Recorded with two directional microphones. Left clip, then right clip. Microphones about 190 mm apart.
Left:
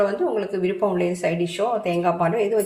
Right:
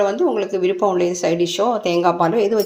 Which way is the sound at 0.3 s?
40° right (ahead or behind).